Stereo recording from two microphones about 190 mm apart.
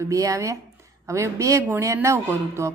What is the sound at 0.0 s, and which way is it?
Speech, 15° right (ahead or behind).